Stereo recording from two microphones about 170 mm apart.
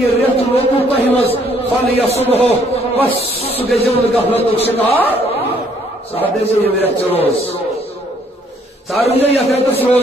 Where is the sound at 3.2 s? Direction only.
35° left (ahead or behind).